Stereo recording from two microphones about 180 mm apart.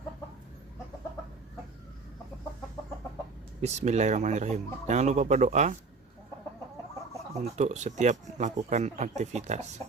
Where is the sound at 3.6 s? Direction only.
40° right (ahead or behind).